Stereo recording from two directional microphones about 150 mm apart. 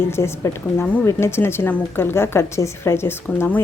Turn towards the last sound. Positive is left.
turn(degrees=15)  # may be behind; listen again after turning